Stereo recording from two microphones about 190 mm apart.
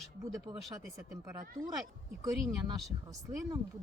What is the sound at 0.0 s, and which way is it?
Speech, centre (ahead or behind).